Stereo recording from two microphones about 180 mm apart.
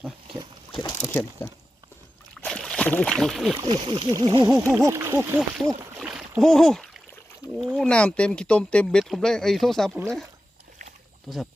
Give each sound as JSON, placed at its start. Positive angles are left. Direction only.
{"t": 1.0, "sound": "speech", "side_deg": 15}
{"t": 2.3, "sound": "boat", "side_deg": 5}
{"t": 3.6, "sound": "speech", "side_deg": -25}
{"t": 6.0, "sound": "rowboat", "side_deg": -5}
{"t": 6.4, "sound": "speech", "side_deg": 0}
{"t": 7.4, "sound": "rowboat", "side_deg": 20}
{"t": 7.8, "sound": "speech", "side_deg": 5}
{"t": 11.3, "sound": "speech", "side_deg": 5}